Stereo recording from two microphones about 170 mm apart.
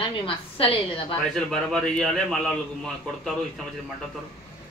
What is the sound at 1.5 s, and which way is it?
Speech, 5° left (ahead or behind).